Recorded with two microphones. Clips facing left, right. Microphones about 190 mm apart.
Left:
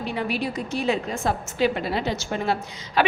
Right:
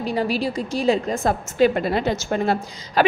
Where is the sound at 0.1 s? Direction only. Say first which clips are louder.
Right 5 dB; 35° right (ahead or behind).